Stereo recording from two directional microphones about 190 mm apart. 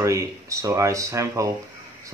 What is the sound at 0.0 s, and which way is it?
Speech, 15° right (ahead or behind).